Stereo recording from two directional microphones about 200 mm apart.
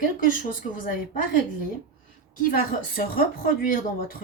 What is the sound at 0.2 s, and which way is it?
Speech, 45° left (ahead or behind).